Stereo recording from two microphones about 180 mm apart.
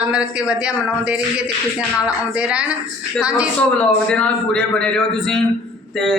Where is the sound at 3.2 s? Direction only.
5° right (ahead or behind).